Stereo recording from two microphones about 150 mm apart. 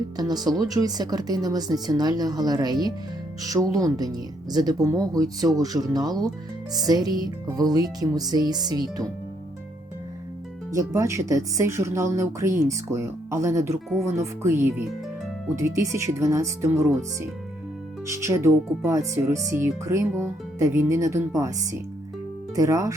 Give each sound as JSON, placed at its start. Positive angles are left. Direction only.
{"t": 0.2, "sound": "speech", "side_deg": -25}
{"t": 10.8, "sound": "speech", "side_deg": -20}